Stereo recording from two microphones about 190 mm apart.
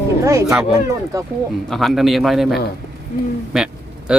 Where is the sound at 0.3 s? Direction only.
15° right (ahead or behind).